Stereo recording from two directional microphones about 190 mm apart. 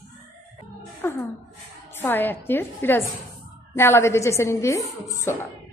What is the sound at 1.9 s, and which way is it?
A woman's voice, 10° left (ahead or behind).